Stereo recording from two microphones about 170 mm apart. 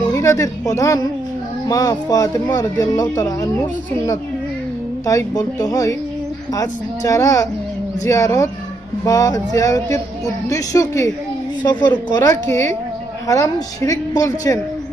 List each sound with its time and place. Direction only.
0.0 s a woman's voice: 20° left (ahead or behind)
5.0 s speech: 20° left (ahead or behind)